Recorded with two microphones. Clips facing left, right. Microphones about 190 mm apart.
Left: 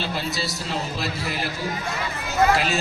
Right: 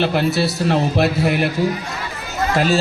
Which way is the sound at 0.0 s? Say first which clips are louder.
Right 10 dB; 65° right (ahead or behind).